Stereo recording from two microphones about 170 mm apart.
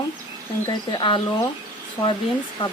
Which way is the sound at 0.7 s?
25° left (ahead or behind).